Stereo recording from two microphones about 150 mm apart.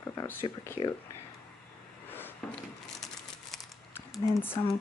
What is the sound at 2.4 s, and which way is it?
Speech, 5° left (ahead or behind).